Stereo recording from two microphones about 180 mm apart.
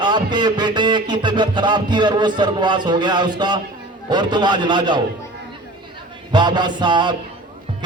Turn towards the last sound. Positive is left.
turn(degrees=-25)  # may be behind; listen again after turning